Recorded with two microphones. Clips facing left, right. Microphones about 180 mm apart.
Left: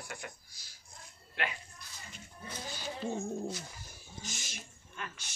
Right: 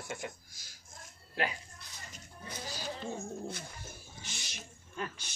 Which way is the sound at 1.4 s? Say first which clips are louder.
Right 3 dB; 35° right (ahead or behind).